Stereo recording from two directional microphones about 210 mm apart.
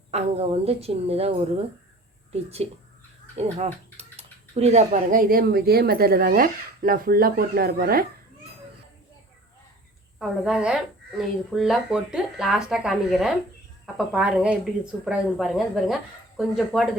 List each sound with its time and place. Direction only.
0.1 s a woman's voice: 30° right (ahead or behind)
2.6 s speech: 30° right (ahead or behind)
10.2 s a woman's voice: 5° right (ahead or behind)